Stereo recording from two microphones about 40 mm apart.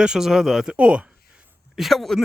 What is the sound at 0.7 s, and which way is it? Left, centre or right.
Speech, right.